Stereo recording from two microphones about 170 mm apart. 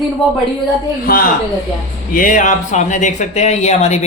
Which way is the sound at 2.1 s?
55° left (ahead or behind).